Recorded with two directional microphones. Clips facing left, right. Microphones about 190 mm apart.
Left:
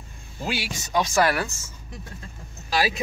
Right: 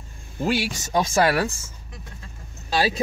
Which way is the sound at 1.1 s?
30° right (ahead or behind).